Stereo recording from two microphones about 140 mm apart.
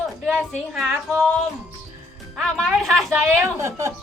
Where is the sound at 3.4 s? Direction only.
20° right (ahead or behind).